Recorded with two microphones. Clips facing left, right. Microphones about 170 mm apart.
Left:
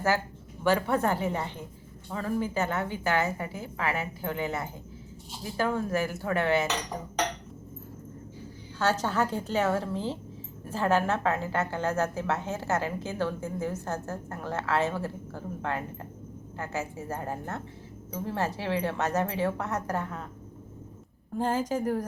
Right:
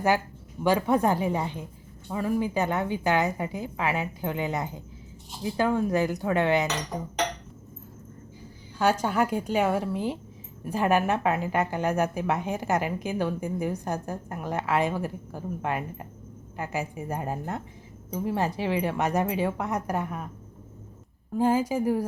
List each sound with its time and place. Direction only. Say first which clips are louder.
0.6 s a woman's voice: right 3 dB; 15° right (ahead or behind)
8.8 s a woman's voice: right 3 dB; 10° right (ahead or behind)
21.3 s a woman's voice: right 4 dB; 10° right (ahead or behind)